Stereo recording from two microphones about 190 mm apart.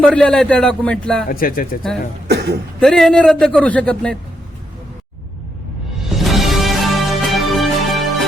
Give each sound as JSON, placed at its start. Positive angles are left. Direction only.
{"t": 0.0, "sound": "a man's voice", "side_deg": 5}
{"t": 1.3, "sound": "speech", "side_deg": 50}
{"t": 2.2, "sound": "speech", "side_deg": -60}
{"t": 2.8, "sound": "a man's voice", "side_deg": 0}
{"t": 6.1, "sound": "music", "side_deg": 0}